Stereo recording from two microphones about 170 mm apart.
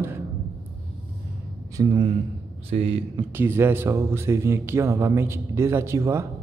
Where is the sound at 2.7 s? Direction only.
35° right (ahead or behind).